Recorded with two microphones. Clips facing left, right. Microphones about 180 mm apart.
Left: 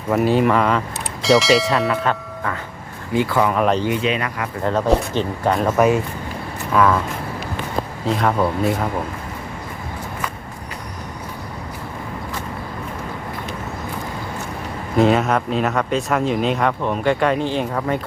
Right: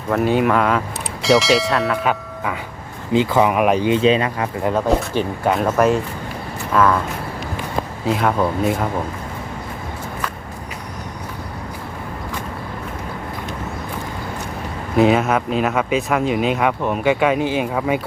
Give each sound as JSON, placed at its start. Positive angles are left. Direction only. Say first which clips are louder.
{"t": 0.1, "sound": "speech", "louder": "even", "side_deg": 0}
{"t": 3.1, "sound": "speech", "louder": "right 2 dB", "side_deg": -20}
{"t": 3.9, "sound": "speech", "louder": "right 6 dB", "side_deg": -30}
{"t": 4.6, "sound": "speech", "louder": "left 1 dB", "side_deg": -10}
{"t": 8.0, "sound": "speech", "louder": "right 1 dB", "side_deg": 0}
{"t": 14.9, "sound": "speech", "louder": "right 1 dB", "side_deg": 0}